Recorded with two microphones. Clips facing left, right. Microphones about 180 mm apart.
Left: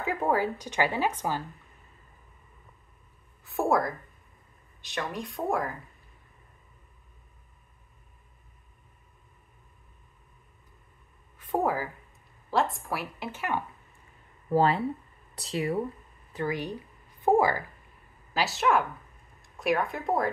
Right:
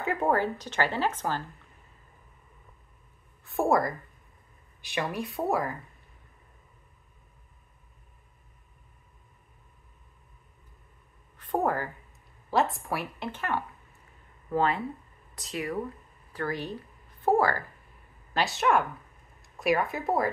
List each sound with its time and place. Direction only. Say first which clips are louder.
0.0 s speech: right 1 dB; centre (ahead or behind)
3.4 s speech: right 1 dB; centre (ahead or behind)
11.3 s a sound: even; 5° left (ahead or behind)
12.4 s speech: right 1 dB; centre (ahead or behind)
14.5 s speech: left 3 dB; 35° left (ahead or behind)
16.3 s speech: left 1 dB; 15° left (ahead or behind)
18.3 s speech: even; centre (ahead or behind)